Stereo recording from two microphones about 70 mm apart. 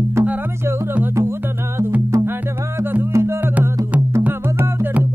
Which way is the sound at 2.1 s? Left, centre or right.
Right.